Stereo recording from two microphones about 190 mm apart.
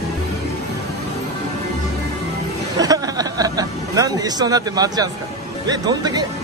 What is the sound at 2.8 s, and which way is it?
Speech, 20° right (ahead or behind).